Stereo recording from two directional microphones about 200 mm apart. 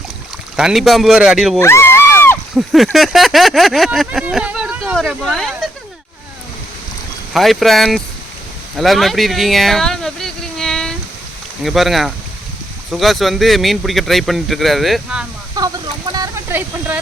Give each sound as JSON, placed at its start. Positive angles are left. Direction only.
{"t": 0.5, "sound": "speech", "side_deg": 0}
{"t": 1.5, "sound": "a sound", "side_deg": 10}
{"t": 2.6, "sound": "speech", "side_deg": 0}
{"t": 7.3, "sound": "speech", "side_deg": 0}
{"t": 15.6, "sound": "speech", "side_deg": -20}
{"t": 16.1, "sound": "a sound", "side_deg": -15}